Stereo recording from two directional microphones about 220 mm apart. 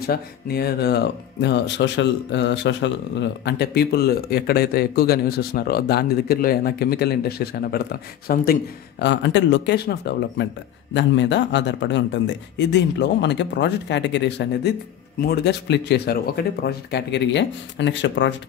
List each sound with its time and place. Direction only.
0.0 s speech: 45° left (ahead or behind)
9.0 s speech: 55° left (ahead or behind)